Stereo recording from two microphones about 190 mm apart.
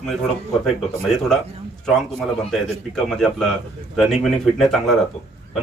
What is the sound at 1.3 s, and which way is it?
Speech, 5° left (ahead or behind).